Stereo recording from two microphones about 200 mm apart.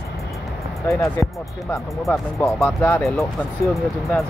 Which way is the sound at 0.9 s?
15° left (ahead or behind).